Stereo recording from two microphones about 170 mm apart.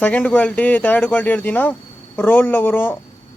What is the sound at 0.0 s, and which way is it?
A man's voice, 10° left (ahead or behind).